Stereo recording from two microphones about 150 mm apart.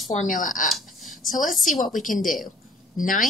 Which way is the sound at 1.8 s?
60° left (ahead or behind).